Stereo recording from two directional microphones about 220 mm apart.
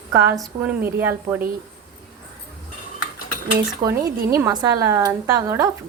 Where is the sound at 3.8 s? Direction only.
15° right (ahead or behind).